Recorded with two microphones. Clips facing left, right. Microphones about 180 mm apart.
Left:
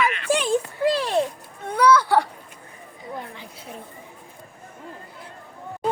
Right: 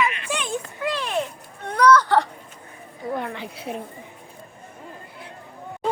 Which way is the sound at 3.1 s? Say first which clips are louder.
Right 7 dB; 70° right (ahead or behind).